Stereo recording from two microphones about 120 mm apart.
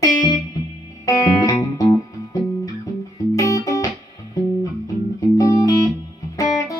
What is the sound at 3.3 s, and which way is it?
Music, 30° left (ahead or behind).